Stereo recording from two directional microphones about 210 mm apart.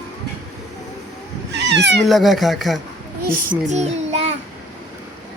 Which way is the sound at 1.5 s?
55° right (ahead or behind).